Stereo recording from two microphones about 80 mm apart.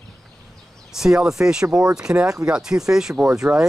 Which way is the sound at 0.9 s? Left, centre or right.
Centre.